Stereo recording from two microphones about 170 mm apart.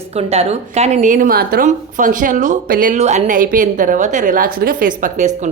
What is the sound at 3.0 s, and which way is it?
A woman's voice, 40° right (ahead or behind).